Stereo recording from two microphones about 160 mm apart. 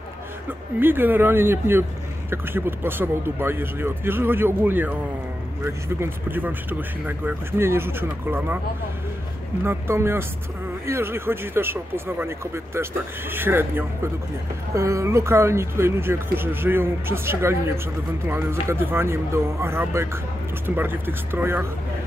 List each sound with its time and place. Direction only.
0.7 s speech: 10° right (ahead or behind)
9.7 s speech: 15° right (ahead or behind)